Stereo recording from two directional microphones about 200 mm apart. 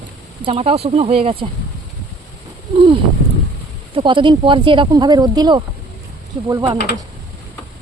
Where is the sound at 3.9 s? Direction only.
25° right (ahead or behind).